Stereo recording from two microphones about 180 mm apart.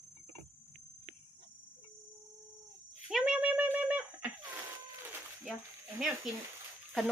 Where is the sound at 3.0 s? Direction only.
5° right (ahead or behind).